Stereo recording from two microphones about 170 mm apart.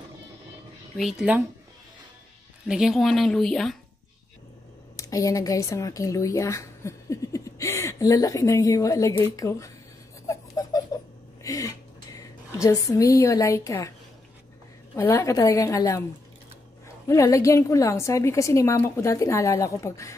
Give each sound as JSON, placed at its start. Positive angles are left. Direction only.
{"t": 0.9, "sound": "a woman's voice", "side_deg": -5}
{"t": 2.6, "sound": "a woman's voice", "side_deg": -5}
{"t": 4.9, "sound": "speech", "side_deg": 20}
{"t": 10.2, "sound": "a sound", "side_deg": 20}
{"t": 15.0, "sound": "a woman's voice", "side_deg": 15}
{"t": 17.1, "sound": "a woman's voice", "side_deg": 20}